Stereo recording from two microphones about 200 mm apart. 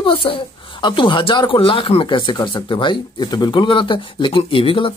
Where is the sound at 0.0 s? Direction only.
25° left (ahead or behind).